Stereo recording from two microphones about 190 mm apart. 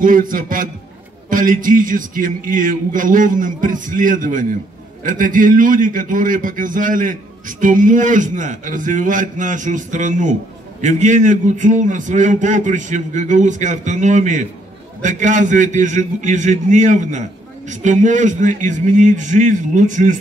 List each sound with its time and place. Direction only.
0.0 s a man's voice: 45° right (ahead or behind)